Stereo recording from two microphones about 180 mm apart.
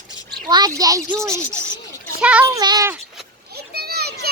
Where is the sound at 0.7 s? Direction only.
20° right (ahead or behind).